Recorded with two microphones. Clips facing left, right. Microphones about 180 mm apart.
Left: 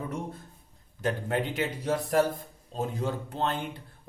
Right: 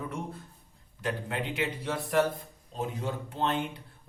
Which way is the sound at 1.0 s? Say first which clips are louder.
Left 4 dB; 40° left (ahead or behind).